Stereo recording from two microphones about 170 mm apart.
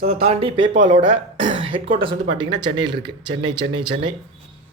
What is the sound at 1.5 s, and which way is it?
Speech, 30° right (ahead or behind).